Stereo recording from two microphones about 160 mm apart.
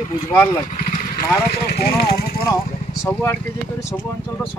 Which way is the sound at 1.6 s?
75° left (ahead or behind).